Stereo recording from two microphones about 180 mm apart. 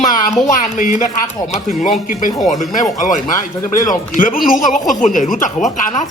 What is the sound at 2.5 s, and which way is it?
Speech, 45° left (ahead or behind).